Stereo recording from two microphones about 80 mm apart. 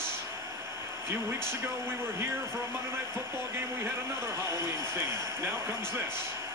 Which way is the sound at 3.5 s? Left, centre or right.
Right.